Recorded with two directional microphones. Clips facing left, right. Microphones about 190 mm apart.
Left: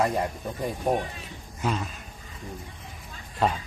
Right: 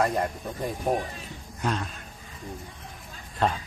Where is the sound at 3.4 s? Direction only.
5° left (ahead or behind).